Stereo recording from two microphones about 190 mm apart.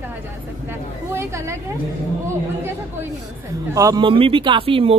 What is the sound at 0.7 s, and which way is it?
Speech, 15° right (ahead or behind).